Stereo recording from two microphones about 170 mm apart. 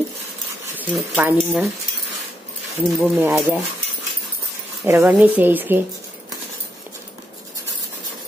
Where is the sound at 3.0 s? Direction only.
15° right (ahead or behind).